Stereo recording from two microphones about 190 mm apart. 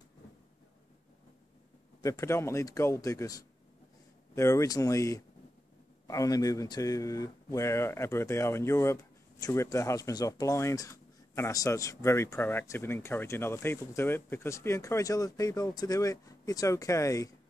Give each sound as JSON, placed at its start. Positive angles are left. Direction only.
{"t": 2.0, "sound": "speech", "side_deg": 15}